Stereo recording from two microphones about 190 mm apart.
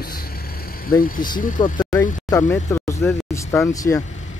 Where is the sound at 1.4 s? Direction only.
45° left (ahead or behind).